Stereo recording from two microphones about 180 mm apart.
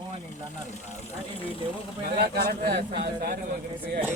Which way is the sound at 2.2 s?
60° right (ahead or behind).